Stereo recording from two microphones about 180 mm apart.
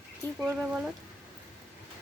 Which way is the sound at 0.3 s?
10° right (ahead or behind).